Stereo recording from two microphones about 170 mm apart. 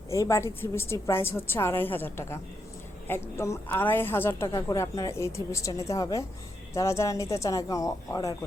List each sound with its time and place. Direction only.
0.1 s a woman's voice: 15° left (ahead or behind)